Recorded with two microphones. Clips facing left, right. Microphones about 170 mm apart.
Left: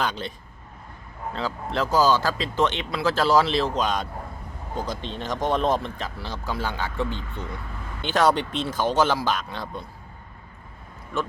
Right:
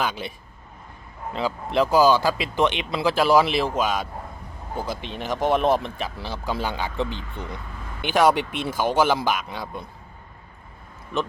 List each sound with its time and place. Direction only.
0.0 s speech: 10° right (ahead or behind)